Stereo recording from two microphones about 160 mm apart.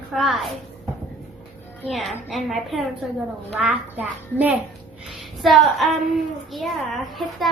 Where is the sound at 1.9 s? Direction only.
Centre (ahead or behind).